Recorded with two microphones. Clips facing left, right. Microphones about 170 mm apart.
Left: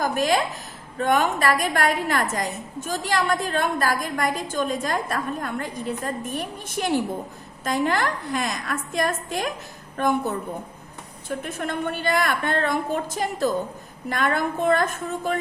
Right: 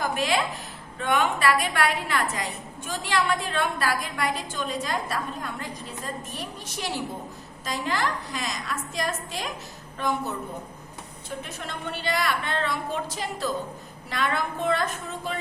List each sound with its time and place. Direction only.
0.0 s a woman's voice: 45° left (ahead or behind)